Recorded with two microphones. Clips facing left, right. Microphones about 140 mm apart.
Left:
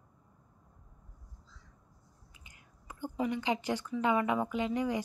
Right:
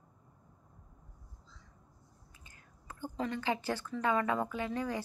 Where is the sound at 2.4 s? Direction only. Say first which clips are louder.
Even; 15° left (ahead or behind).